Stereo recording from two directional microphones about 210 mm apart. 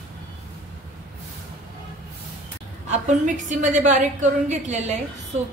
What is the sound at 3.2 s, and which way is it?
Speech, 35° right (ahead or behind).